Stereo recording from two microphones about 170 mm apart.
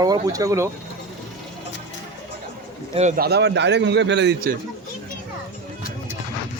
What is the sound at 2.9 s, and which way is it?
Speech, 40° right (ahead or behind).